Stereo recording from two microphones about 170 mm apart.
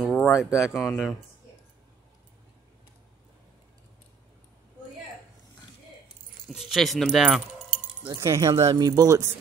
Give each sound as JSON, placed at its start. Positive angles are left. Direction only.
{"t": 0.0, "sound": "a sound", "side_deg": 10}
{"t": 0.4, "sound": "speech", "side_deg": -5}
{"t": 6.4, "sound": "keys jangling", "side_deg": -30}
{"t": 6.7, "sound": "speech", "side_deg": 0}
{"t": 8.1, "sound": "speech", "side_deg": -20}